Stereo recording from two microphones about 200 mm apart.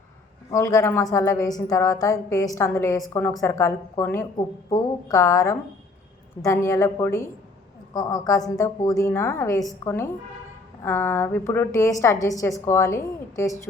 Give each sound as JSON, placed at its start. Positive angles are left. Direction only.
{"t": 0.5, "sound": "a woman's voice", "side_deg": 15}